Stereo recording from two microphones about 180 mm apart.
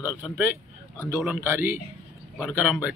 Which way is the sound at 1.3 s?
15° right (ahead or behind).